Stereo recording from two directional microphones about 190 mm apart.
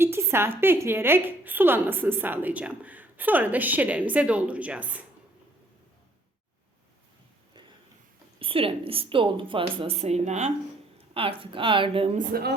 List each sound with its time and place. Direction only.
0.0 s a woman's voice: 10° right (ahead or behind)
8.4 s a woman's voice: 30° right (ahead or behind)
12.1 s speech: 55° right (ahead or behind)